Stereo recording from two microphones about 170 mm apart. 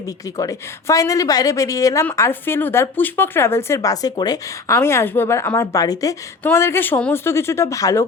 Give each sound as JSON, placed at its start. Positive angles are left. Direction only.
{"t": 0.3, "sound": "a woman's voice", "side_deg": 20}